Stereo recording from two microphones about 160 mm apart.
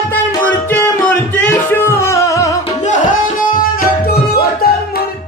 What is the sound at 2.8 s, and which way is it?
Music, 55° left (ahead or behind).